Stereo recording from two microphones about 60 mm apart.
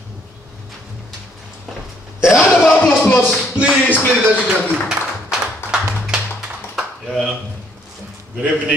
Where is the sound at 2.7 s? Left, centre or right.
Left.